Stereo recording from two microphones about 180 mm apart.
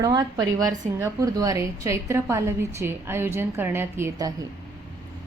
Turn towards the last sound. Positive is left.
turn(degrees=-15)  # may be behind; listen again after turning